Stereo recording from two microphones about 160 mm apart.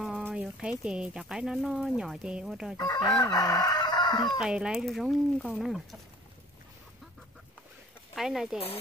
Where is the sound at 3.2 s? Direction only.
25° left (ahead or behind).